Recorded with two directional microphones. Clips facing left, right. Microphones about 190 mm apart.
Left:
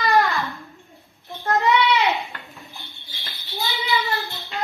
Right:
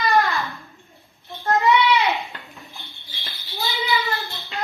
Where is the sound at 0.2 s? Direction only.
Centre (ahead or behind).